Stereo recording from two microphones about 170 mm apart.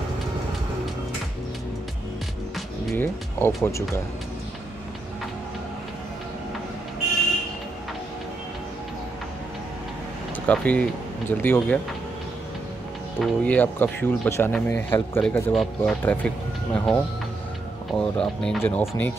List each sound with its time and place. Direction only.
3.0 s speech: 15° left (ahead or behind)
10.4 s speech: 10° left (ahead or behind)
13.2 s speech: 10° left (ahead or behind)